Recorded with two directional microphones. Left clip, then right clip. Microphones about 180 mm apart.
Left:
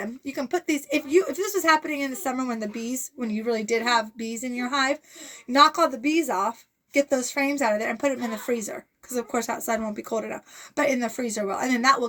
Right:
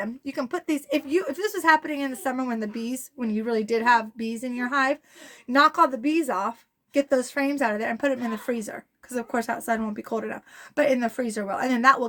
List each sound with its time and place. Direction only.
0.0 s speech: 25° right (ahead or behind)